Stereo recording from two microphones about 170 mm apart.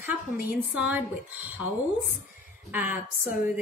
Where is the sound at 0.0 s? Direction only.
10° right (ahead or behind).